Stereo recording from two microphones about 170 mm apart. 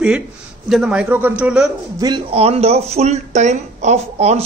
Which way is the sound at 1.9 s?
25° right (ahead or behind).